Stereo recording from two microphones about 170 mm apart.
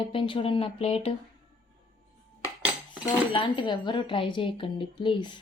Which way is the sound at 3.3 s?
30° left (ahead or behind).